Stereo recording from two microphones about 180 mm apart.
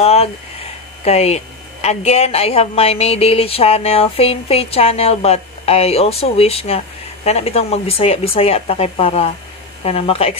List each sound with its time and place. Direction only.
0.0 s a woman's voice: 35° left (ahead or behind)